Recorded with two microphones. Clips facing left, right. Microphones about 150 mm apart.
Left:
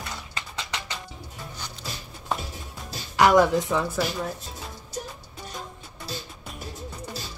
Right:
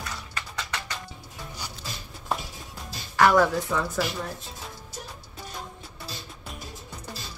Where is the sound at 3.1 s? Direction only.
15° left (ahead or behind).